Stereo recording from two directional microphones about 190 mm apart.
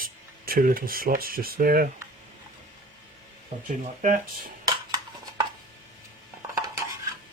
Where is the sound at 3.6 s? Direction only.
45° right (ahead or behind).